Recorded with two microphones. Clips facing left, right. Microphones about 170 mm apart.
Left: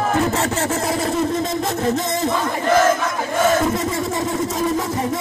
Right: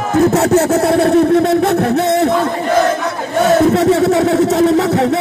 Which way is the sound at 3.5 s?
70° right (ahead or behind).